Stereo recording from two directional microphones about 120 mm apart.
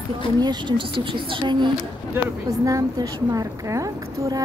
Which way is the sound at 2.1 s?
25° right (ahead or behind).